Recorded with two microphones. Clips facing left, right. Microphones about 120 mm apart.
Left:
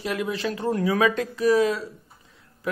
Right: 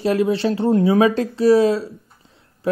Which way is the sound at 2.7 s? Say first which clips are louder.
Right 9 dB; 30° right (ahead or behind).